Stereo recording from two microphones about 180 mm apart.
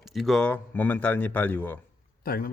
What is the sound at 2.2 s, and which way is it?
Speech, 55° left (ahead or behind).